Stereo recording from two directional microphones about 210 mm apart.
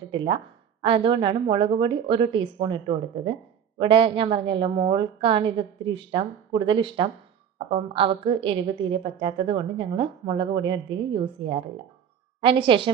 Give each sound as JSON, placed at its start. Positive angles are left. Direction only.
{"t": 0.1, "sound": "a woman's voice", "side_deg": -25}